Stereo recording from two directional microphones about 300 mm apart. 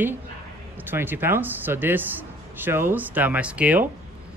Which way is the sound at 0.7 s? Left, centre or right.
Centre.